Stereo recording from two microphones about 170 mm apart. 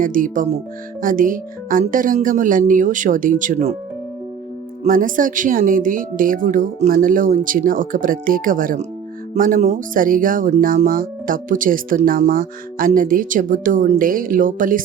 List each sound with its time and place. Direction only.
0.0 s speech: 50° right (ahead or behind)
4.8 s speech: 50° right (ahead or behind)